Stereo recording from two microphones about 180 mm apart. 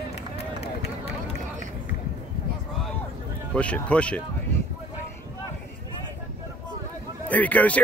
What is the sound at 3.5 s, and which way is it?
Speech, 5° left (ahead or behind).